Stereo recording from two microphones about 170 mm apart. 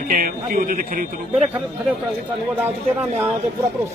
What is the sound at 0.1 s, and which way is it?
Speech, 60° right (ahead or behind).